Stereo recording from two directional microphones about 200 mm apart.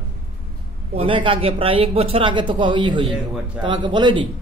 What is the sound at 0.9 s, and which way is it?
A man's voice, 25° right (ahead or behind).